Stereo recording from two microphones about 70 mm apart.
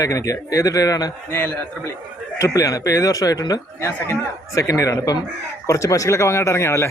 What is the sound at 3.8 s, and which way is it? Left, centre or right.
A man's voice, left.